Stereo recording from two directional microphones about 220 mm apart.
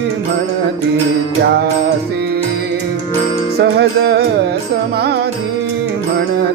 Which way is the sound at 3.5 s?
50° right (ahead or behind).